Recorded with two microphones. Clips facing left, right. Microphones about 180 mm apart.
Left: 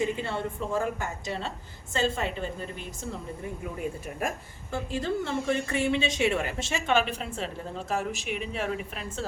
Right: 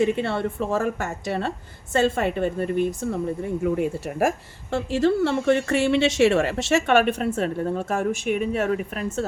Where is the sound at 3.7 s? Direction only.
80° right.